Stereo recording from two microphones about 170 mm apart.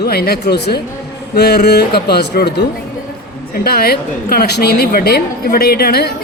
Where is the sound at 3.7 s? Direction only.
65° left (ahead or behind).